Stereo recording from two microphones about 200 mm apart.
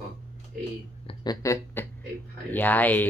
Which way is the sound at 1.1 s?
20° left (ahead or behind).